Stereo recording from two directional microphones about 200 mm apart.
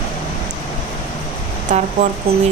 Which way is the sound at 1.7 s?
35° right (ahead or behind).